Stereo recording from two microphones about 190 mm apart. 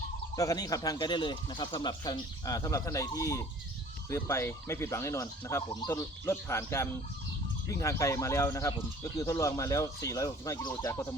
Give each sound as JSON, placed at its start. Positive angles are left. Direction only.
{"t": 0.3, "sound": "speech", "side_deg": 20}